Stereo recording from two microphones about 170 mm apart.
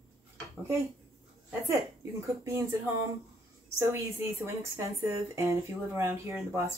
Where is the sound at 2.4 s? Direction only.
15° right (ahead or behind).